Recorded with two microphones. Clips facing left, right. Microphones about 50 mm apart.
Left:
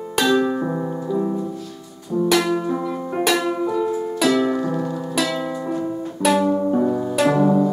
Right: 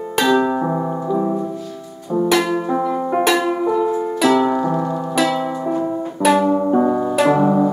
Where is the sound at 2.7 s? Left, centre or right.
Right.